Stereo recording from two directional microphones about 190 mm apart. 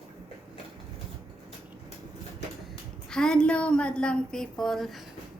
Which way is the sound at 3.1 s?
5° left (ahead or behind).